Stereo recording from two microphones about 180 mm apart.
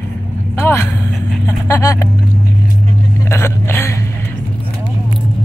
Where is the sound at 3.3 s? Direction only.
15° left (ahead or behind).